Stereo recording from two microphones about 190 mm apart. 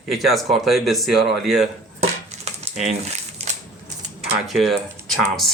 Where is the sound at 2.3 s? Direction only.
40° right (ahead or behind).